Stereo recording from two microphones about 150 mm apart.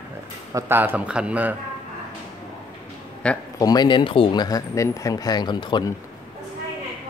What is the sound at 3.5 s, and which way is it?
Speech, 25° left (ahead or behind).